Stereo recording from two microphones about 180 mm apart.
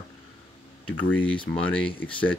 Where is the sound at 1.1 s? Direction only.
10° left (ahead or behind).